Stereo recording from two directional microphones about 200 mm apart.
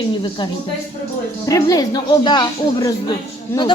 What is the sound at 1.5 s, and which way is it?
Speech, 20° left (ahead or behind).